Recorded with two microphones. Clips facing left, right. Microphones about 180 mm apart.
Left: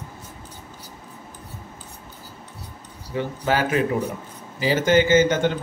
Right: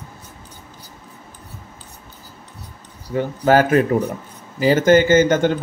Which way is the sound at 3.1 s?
50° right (ahead or behind).